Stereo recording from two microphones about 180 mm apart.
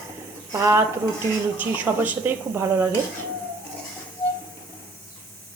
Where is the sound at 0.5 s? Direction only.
15° right (ahead or behind).